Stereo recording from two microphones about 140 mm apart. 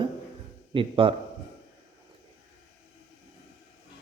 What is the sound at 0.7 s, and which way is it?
Speech, 40° right (ahead or behind).